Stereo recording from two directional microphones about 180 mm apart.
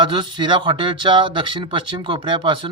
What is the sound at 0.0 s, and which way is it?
Speech, 25° right (ahead or behind).